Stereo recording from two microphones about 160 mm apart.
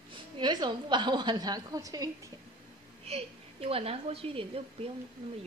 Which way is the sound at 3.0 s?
40° right (ahead or behind).